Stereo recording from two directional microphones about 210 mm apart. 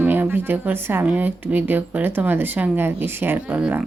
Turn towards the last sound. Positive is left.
turn(degrees=-5)  # may be behind; listen again after turning